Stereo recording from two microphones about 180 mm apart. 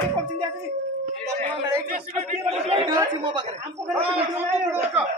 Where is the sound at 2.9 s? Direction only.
20° right (ahead or behind).